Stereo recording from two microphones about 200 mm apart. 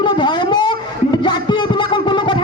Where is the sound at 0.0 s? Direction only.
20° left (ahead or behind).